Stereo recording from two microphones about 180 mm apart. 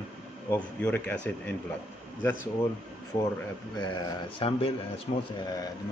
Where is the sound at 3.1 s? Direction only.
25° left (ahead or behind).